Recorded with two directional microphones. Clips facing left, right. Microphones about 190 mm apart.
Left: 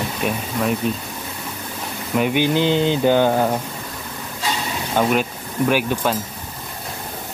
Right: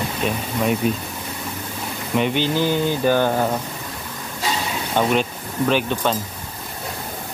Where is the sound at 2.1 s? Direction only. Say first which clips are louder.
Left 2 dB; 10° left (ahead or behind).